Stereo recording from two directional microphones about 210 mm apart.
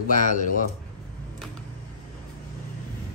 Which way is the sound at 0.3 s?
40° left (ahead or behind).